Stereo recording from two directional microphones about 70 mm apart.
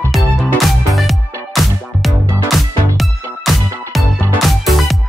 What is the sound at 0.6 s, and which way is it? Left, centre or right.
Music, centre.